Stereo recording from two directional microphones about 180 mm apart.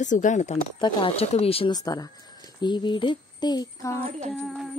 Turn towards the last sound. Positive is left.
turn(degrees=0)  # may be behind; listen again after turning